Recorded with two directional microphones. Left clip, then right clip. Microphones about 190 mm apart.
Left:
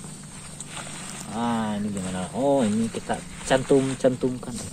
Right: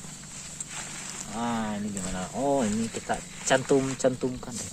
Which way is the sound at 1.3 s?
5° right (ahead or behind).